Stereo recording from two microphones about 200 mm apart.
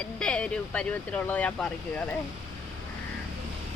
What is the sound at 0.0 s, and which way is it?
Speech, 5° left (ahead or behind).